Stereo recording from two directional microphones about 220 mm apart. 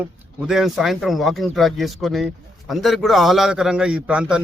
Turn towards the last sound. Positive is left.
turn(degrees=-5)  # may be behind; listen again after turning